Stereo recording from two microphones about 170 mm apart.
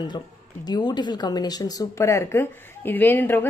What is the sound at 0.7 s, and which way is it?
Speech, 25° left (ahead or behind).